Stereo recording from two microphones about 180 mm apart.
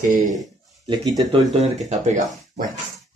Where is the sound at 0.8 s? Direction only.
20° right (ahead or behind).